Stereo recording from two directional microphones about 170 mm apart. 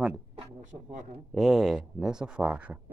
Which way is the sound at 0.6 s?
45° right (ahead or behind).